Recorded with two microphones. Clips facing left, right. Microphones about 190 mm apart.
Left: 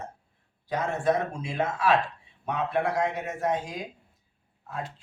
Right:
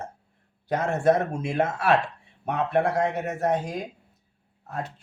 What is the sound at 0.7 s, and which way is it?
Speech, 50° right (ahead or behind).